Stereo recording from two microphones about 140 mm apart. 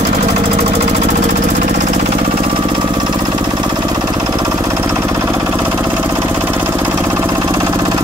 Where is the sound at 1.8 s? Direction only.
50° right (ahead or behind).